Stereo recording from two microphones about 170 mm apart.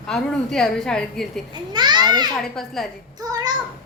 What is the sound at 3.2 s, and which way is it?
Speech, 20° right (ahead or behind).